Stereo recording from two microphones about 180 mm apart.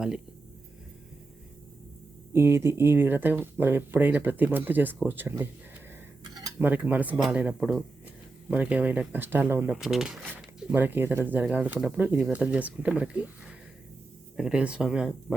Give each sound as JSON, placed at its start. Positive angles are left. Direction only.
{"t": 2.3, "sound": "speech", "side_deg": -15}
{"t": 6.3, "sound": "cutlery", "side_deg": -20}
{"t": 6.7, "sound": "speech", "side_deg": -10}